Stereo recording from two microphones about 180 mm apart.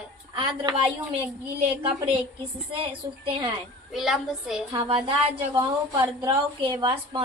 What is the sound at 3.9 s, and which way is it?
Speech, centre (ahead or behind).